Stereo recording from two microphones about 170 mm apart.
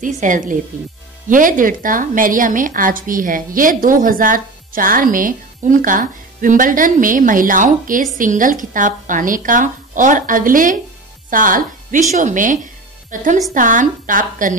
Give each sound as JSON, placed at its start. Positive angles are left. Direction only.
{"t": 0.0, "sound": "a woman's voice", "side_deg": -50}